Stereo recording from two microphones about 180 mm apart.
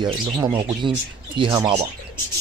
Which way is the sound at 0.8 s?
30° right (ahead or behind).